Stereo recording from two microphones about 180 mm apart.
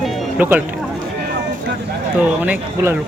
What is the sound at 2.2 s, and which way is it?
Speech, 10° right (ahead or behind).